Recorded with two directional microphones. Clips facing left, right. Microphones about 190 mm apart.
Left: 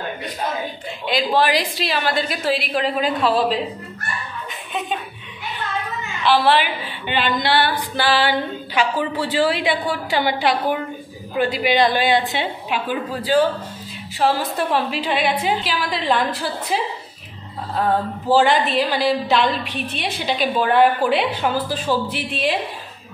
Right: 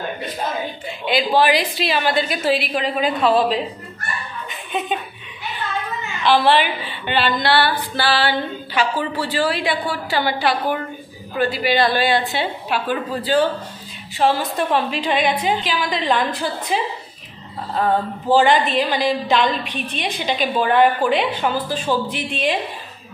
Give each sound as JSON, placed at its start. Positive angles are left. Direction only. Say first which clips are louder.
{"t": 1.0, "sound": "a woman's voice", "louder": "right 2 dB", "side_deg": 0}
{"t": 4.5, "sound": "a sound", "louder": "right 3 dB", "side_deg": 0}
{"t": 6.2, "sound": "a woman's voice", "louder": "right 1 dB", "side_deg": 5}
{"t": 18.3, "sound": "a woman's voice", "louder": "right 1 dB", "side_deg": 5}